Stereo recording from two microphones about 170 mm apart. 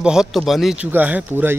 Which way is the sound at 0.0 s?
5° right (ahead or behind).